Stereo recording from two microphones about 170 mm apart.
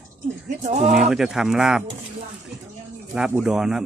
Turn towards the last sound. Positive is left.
turn(degrees=-5)  # may be behind; listen again after turning